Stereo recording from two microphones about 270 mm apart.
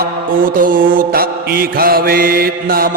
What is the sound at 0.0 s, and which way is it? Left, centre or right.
Mantra, right.